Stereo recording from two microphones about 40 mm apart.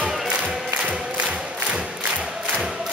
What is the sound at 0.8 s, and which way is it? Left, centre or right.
Music, right.